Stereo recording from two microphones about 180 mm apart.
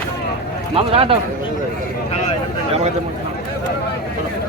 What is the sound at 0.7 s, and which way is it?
Speech, 30° right (ahead or behind).